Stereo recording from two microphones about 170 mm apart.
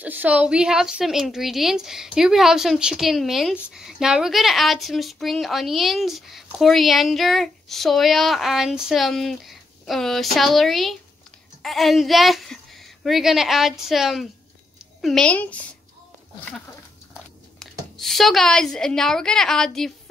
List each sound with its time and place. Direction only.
0.0 s a woman's voice: 10° right (ahead or behind)